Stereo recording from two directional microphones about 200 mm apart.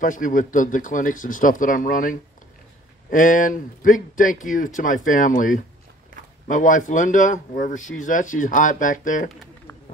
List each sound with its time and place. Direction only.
0.0 s speech: 40° left (ahead or behind)